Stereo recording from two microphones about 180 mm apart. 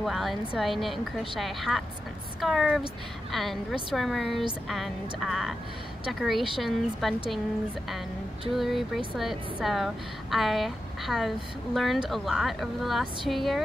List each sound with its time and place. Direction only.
0.0 s a woman's voice: centre (ahead or behind)
8.5 s a woman's voice: centre (ahead or behind)